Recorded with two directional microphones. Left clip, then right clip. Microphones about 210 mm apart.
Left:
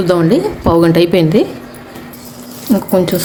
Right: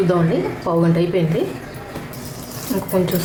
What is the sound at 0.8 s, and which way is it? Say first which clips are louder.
Speech: left 9 dB; 50° left (ahead or behind).